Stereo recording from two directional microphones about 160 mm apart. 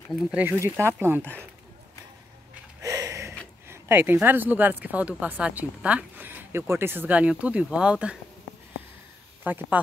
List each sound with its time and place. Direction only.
0.1 s speech: 5° right (ahead or behind)
2.8 s a sound: 20° right (ahead or behind)
3.6 s speech: 15° right (ahead or behind)
9.4 s speech: 10° right (ahead or behind)